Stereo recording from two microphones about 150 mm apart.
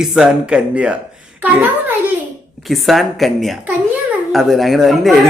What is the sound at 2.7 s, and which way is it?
Speech, centre (ahead or behind).